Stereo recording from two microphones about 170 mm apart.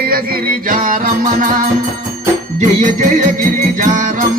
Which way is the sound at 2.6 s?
45° right (ahead or behind).